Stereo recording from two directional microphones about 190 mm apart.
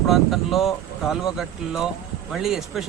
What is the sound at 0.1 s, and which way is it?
A man's voice, centre (ahead or behind).